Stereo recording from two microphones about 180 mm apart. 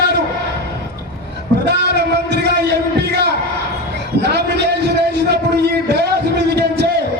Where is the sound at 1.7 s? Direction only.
70° right (ahead or behind).